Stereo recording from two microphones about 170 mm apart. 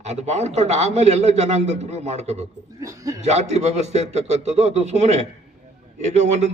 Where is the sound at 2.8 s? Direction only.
20° right (ahead or behind).